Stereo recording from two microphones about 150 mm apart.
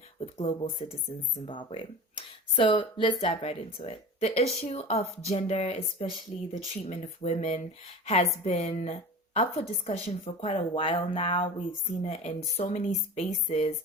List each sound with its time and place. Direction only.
0.2 s a woman's voice: 45° left (ahead or behind)
12.0 s speech: 45° left (ahead or behind)